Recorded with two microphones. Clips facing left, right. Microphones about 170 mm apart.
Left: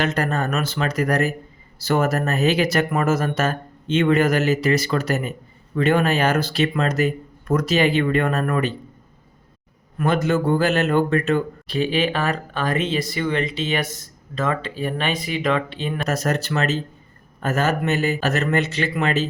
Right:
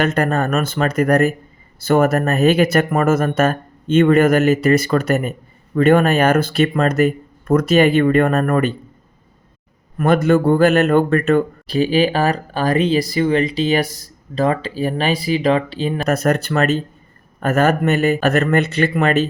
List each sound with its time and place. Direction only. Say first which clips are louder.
0.0 s speech: right 5 dB; 50° right (ahead or behind)
10.0 s speech: right 6 dB; 55° right (ahead or behind)
11.7 s speech: right 5 dB; 35° right (ahead or behind)
16.0 s speech: right 6 dB; 55° right (ahead or behind)